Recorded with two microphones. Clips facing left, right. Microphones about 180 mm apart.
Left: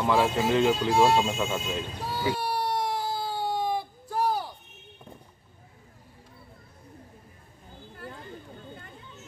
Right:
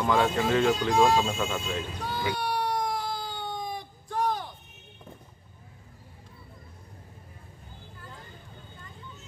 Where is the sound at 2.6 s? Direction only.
30° left (ahead or behind).